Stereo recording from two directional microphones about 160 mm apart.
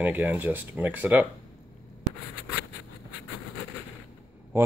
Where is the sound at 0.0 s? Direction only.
10° right (ahead or behind).